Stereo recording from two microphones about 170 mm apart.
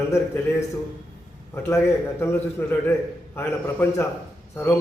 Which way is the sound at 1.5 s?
15° left (ahead or behind).